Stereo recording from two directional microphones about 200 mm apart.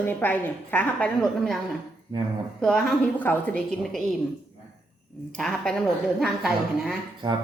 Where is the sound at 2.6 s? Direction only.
Centre (ahead or behind).